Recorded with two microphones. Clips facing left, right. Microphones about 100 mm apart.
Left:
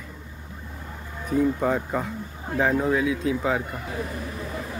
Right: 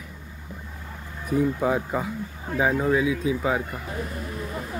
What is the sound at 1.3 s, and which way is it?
Speech, 5° right (ahead or behind).